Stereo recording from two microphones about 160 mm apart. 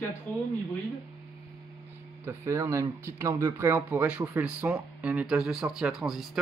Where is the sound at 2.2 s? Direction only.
15° right (ahead or behind).